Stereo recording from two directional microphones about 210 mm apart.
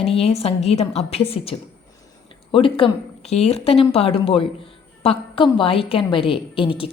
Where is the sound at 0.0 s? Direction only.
30° left (ahead or behind).